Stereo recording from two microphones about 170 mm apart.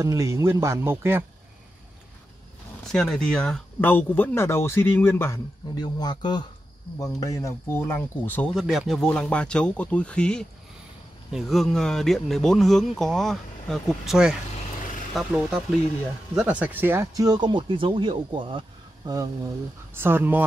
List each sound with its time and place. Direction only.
0.0 s speech: 20° right (ahead or behind)
2.9 s speech: 5° left (ahead or behind); by 20.4 s 10° right (ahead or behind)